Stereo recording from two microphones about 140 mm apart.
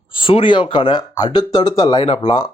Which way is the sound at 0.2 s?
35° left (ahead or behind).